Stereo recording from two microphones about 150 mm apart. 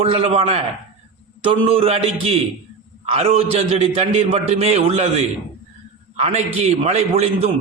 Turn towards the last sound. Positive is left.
turn(degrees=-45)  # may be behind; listen again after turning